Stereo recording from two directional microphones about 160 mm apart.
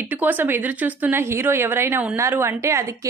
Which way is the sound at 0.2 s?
10° right (ahead or behind).